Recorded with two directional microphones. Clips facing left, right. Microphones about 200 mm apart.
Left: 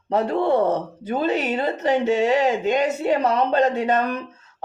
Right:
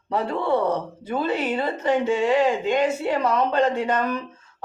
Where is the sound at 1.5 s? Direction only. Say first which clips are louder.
Left 1 dB; 40° left (ahead or behind).